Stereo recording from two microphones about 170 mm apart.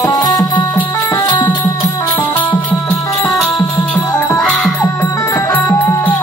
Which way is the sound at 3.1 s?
20° left (ahead or behind).